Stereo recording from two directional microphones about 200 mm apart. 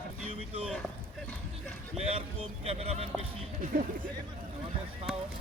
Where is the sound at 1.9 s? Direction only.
30° right (ahead or behind).